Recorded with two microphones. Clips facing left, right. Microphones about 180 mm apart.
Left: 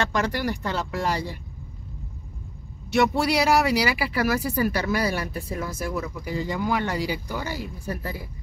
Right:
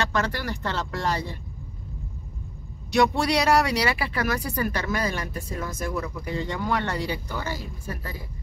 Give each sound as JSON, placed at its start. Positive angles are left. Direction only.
{"t": 0.1, "sound": "speech", "side_deg": 15}
{"t": 2.9, "sound": "speech", "side_deg": 5}